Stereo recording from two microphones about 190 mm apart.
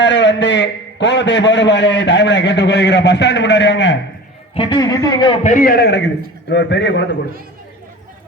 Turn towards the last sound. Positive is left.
turn(degrees=65)  # may be behind; listen again after turning